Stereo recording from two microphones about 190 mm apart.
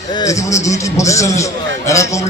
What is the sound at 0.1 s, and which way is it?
A man's voice, 20° left (ahead or behind).